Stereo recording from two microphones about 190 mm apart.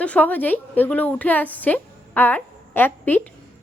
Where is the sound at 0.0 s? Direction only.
5° left (ahead or behind).